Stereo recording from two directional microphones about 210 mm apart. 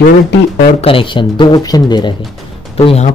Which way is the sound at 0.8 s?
25° left (ahead or behind).